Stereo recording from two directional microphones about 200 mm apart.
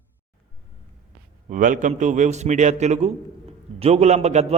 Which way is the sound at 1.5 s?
40° right (ahead or behind).